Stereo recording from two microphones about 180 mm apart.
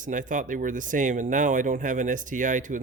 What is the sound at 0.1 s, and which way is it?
Speech, 45° right (ahead or behind).